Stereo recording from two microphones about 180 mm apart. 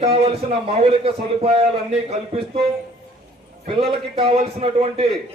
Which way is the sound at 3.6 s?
35° right (ahead or behind).